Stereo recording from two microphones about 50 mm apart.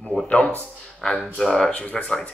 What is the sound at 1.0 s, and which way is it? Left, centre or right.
Speech, centre.